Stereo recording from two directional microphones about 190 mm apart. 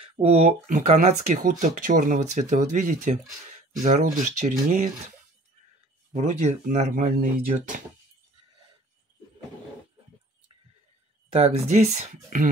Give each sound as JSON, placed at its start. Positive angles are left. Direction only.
{"t": 0.0, "sound": "speech", "side_deg": -30}
{"t": 6.1, "sound": "speech", "side_deg": -35}
{"t": 11.3, "sound": "speech", "side_deg": -35}